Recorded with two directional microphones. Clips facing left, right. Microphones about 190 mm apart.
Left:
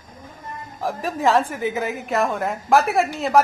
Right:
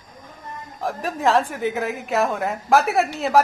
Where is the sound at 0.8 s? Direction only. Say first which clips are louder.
Left 1 dB; centre (ahead or behind).